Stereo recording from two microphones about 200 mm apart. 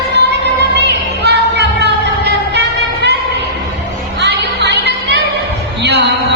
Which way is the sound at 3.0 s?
60° right (ahead or behind).